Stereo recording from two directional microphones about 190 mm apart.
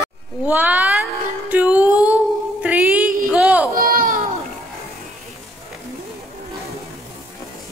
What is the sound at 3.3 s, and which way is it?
Music, 5° right (ahead or behind).